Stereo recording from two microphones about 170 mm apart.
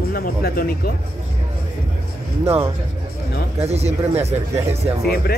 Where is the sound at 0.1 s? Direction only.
60° left (ahead or behind).